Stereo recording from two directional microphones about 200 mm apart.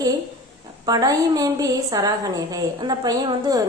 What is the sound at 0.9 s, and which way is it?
A woman's voice, 20° right (ahead or behind).